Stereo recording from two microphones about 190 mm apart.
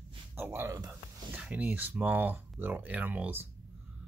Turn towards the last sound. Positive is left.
turn(degrees=-10)  # may be behind; listen again after turning